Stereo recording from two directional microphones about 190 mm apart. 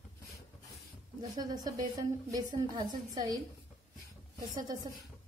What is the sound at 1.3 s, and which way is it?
A woman's voice, 20° right (ahead or behind).